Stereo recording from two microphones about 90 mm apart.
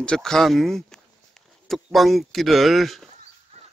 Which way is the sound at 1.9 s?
Centre (ahead or behind).